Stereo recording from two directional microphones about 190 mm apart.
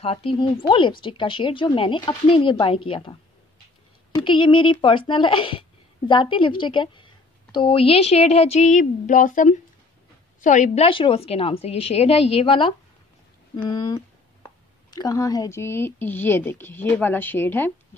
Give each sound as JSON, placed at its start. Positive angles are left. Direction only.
{"t": 0.0, "sound": "a woman's voice", "side_deg": 30}
{"t": 4.2, "sound": "a woman's voice", "side_deg": 25}